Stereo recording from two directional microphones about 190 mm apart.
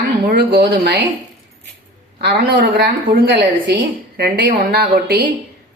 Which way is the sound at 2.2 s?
55° right (ahead or behind).